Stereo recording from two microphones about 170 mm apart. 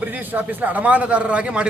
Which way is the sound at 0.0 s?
10° right (ahead or behind).